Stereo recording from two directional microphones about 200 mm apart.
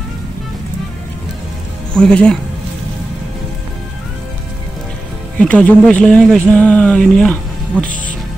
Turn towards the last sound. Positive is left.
turn(degrees=5)  # may be behind; listen again after turning